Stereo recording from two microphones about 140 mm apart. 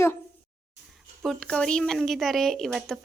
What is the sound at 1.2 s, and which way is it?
Speech, 5° left (ahead or behind).